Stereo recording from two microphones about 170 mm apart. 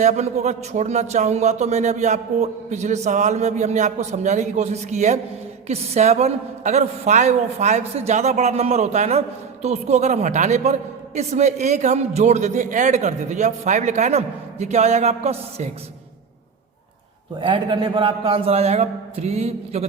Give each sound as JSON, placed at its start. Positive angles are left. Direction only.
{"t": 0.0, "sound": "a man's voice", "side_deg": -40}
{"t": 17.4, "sound": "a man's voice", "side_deg": -30}